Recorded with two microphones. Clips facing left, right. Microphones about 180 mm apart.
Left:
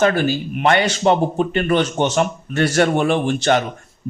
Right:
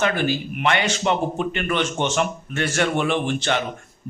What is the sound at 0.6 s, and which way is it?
Speech, 40° left (ahead or behind).